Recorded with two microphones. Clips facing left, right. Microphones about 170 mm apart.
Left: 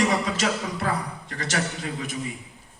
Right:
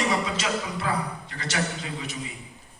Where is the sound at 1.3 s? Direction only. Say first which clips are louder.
Left 5 dB; 45° left (ahead or behind).